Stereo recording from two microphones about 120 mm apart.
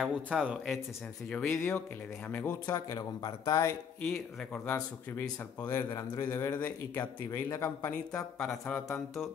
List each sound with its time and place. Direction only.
0.0 s speech: 5° right (ahead or behind)
1.3 s speech: 5° left (ahead or behind)
2.6 s a man's voice: 25° left (ahead or behind)
4.1 s a man's voice: 10° left (ahead or behind)